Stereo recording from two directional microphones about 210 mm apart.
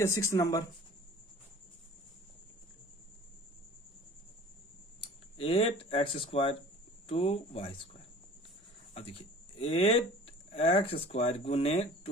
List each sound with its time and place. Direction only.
0.0 s speech: 15° left (ahead or behind)
5.0 s a sound: 30° left (ahead or behind)
7.1 s speech: 30° left (ahead or behind)
8.9 s speech: 25° left (ahead or behind)